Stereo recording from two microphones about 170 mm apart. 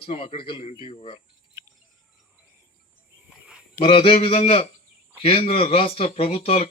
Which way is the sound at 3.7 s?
30° left (ahead or behind).